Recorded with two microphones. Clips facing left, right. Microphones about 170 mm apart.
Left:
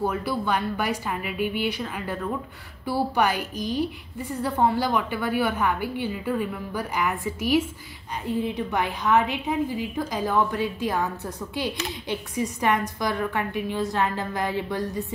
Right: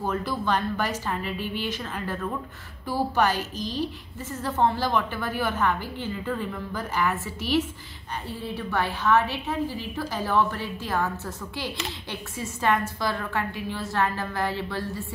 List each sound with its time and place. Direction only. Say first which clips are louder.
0.0 s a woman's voice: left 2 dB; 10° left (ahead or behind)